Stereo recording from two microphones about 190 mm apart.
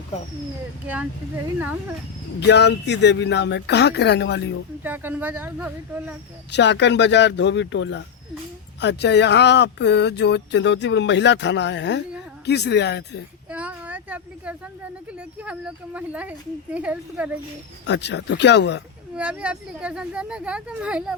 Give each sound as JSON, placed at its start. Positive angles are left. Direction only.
{"t": 1.5, "sound": "speech", "side_deg": -10}
{"t": 2.4, "sound": "speech", "side_deg": 65}
{"t": 4.8, "sound": "speech", "side_deg": -10}
{"t": 6.5, "sound": "speech", "side_deg": 65}
{"t": 13.5, "sound": "a sound", "side_deg": -5}
{"t": 15.2, "sound": "speech", "side_deg": -5}
{"t": 17.8, "sound": "speech", "side_deg": 65}
{"t": 19.1, "sound": "speech", "side_deg": -5}